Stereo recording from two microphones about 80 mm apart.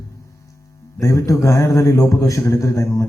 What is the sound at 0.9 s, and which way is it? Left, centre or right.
A man's voice, left.